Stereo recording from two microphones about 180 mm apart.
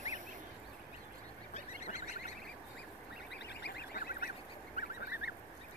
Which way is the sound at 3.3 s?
70° left (ahead or behind).